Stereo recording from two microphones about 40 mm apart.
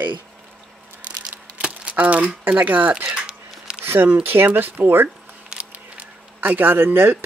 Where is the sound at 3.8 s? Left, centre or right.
Right.